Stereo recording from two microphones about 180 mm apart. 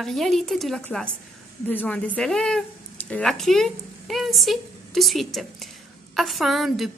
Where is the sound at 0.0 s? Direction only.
Centre (ahead or behind).